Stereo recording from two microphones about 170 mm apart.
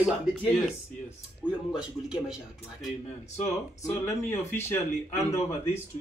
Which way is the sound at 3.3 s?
15° left (ahead or behind).